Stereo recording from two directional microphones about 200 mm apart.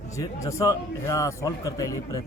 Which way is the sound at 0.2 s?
15° left (ahead or behind).